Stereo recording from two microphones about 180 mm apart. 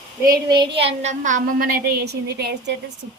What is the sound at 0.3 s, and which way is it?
A woman's voice, 25° right (ahead or behind).